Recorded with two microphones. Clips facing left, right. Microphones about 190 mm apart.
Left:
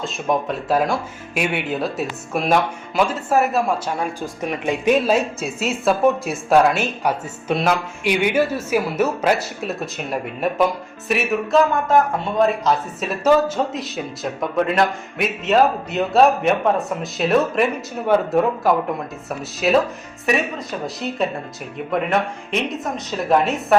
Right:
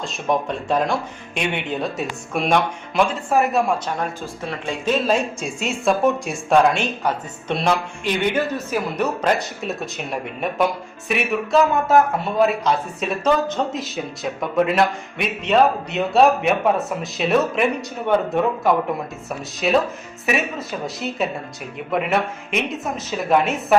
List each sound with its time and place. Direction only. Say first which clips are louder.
0.0 s speech: left 1 dB; centre (ahead or behind)
19.6 s speech: left 2 dB; centre (ahead or behind)
22.5 s speech: left 1 dB; centre (ahead or behind)